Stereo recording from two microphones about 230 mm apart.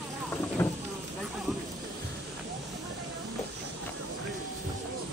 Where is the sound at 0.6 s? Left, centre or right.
Centre.